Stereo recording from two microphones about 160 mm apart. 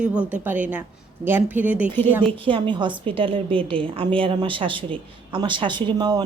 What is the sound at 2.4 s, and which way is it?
A woman's voice, 30° right (ahead or behind).